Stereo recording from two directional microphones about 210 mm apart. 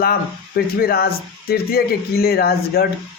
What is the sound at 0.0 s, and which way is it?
Speech, 45° left (ahead or behind).